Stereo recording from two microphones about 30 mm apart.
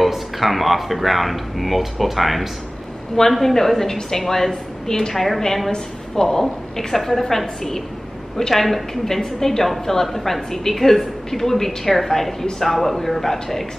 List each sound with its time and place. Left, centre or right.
0.0 s speech: centre
3.2 s a woman's voice: centre
5.1 s speech: centre
6.2 s a woman's voice: centre
7.0 s a woman's voice: centre